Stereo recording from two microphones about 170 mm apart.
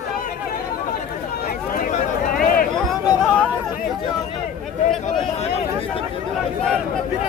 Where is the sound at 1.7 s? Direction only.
50° left (ahead or behind).